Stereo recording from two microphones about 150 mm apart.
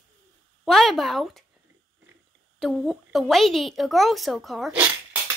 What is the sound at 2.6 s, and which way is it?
A woman's voice, centre (ahead or behind).